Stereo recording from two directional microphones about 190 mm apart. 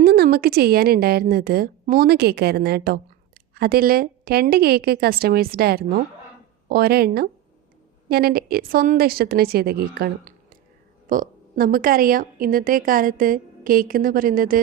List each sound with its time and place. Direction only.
0.0 s a woman's voice: 55° right (ahead or behind)